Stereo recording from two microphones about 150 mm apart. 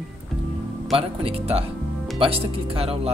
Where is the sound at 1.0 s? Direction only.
40° right (ahead or behind).